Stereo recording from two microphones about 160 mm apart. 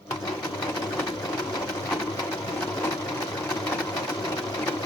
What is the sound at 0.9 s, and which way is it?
Sewing machine, 20° left (ahead or behind).